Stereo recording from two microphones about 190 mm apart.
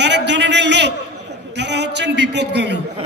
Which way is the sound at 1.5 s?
65° right (ahead or behind).